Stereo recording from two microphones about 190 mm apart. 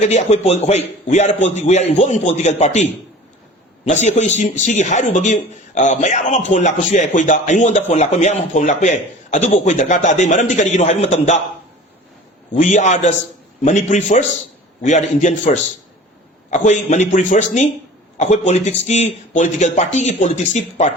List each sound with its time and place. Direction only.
0.0 s a man's voice: 35° left (ahead or behind)
3.8 s a man's voice: 35° left (ahead or behind)
12.5 s a man's voice: 40° left (ahead or behind)